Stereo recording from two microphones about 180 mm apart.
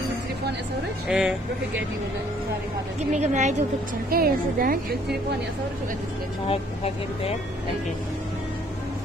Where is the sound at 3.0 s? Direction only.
40° right (ahead or behind).